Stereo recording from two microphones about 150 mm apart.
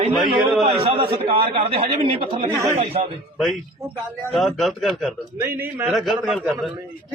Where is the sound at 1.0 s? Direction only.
90° right.